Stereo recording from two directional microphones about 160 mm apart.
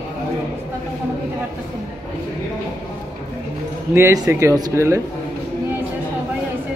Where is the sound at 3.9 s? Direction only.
20° right (ahead or behind).